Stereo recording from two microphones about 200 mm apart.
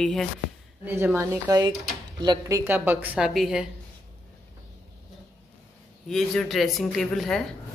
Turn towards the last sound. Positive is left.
turn(degrees=0)  # may be behind; listen again after turning